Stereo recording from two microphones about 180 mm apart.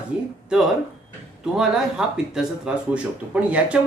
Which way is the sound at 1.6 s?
5° right (ahead or behind).